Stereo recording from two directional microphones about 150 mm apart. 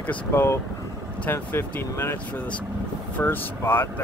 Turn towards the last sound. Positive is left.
turn(degrees=15)  # may be behind; listen again after turning